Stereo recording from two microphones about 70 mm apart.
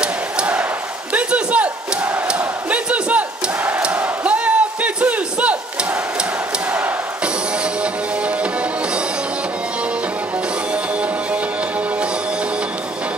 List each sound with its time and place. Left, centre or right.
0.0 s battle cry: centre
1.1 s a sound: centre
2.2 s crowd: centre